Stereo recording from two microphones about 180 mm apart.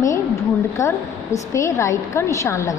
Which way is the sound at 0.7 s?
15° left (ahead or behind).